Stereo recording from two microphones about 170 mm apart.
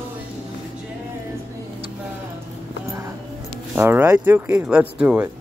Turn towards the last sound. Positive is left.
turn(degrees=-10)  # may be behind; listen again after turning